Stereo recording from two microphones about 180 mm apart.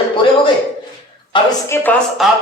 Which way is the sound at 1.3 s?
20° left (ahead or behind).